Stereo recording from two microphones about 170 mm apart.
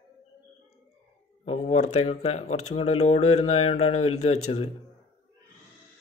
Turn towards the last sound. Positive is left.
turn(degrees=40)  # may be behind; listen again after turning